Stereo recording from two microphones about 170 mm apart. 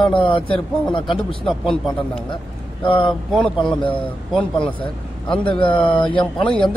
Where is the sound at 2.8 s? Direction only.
30° left (ahead or behind).